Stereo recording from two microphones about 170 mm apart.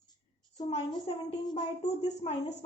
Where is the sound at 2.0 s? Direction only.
40° left (ahead or behind).